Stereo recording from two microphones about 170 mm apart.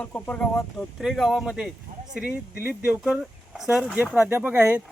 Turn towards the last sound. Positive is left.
turn(degrees=-10)  # may be behind; listen again after turning